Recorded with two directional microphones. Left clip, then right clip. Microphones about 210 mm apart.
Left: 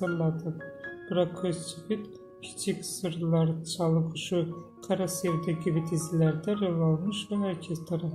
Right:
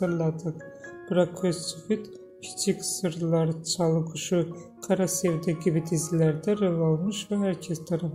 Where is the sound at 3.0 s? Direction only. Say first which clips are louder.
Right 2 dB; 25° right (ahead or behind).